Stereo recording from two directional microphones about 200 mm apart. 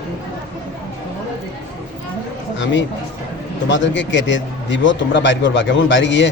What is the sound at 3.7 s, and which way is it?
A man's voice, 65° left (ahead or behind).